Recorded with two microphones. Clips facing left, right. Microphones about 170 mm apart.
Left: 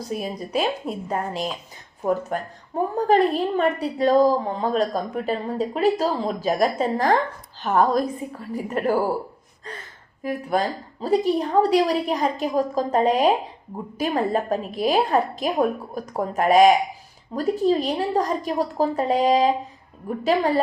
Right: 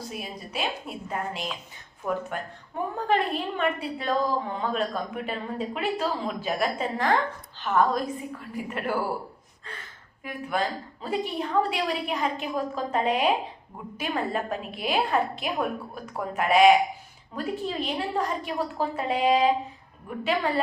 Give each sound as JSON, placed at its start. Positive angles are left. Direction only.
{"t": 0.1, "sound": "a woman's voice", "side_deg": 40}
{"t": 10.2, "sound": "a woman's voice", "side_deg": 40}